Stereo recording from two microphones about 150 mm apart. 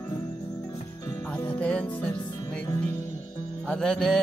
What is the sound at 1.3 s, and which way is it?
Music, 10° left (ahead or behind).